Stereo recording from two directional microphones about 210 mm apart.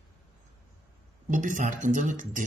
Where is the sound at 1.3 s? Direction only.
40° right (ahead or behind).